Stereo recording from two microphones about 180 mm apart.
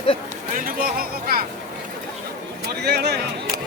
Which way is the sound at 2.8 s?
65° right (ahead or behind).